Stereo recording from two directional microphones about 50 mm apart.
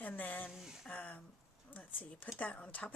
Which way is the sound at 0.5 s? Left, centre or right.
Centre.